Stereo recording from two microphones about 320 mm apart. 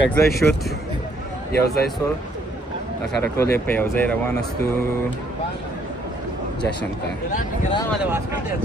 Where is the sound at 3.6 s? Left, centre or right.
Centre.